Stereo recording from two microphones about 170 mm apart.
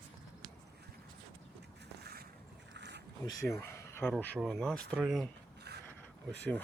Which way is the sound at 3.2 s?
20° left (ahead or behind).